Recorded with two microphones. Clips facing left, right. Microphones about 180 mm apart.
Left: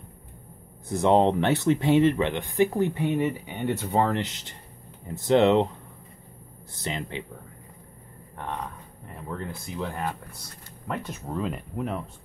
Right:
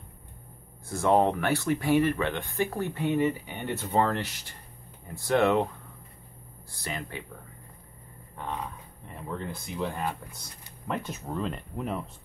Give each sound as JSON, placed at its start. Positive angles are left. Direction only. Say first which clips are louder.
{"t": 0.8, "sound": "speech", "louder": "left 3 dB", "side_deg": 20}
{"t": 6.7, "sound": "speech", "louder": "left 4 dB", "side_deg": 20}
{"t": 9.8, "sound": "speech", "louder": "even", "side_deg": -5}